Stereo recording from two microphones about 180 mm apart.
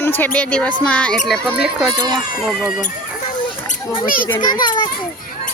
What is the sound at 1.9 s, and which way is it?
Speech, 25° right (ahead or behind).